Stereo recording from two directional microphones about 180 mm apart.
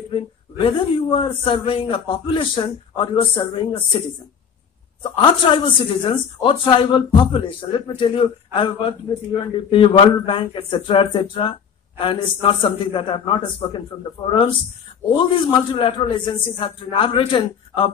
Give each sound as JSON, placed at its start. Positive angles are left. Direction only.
{"t": 0.1, "sound": "speech", "side_deg": 30}
{"t": 5.0, "sound": "speech", "side_deg": 30}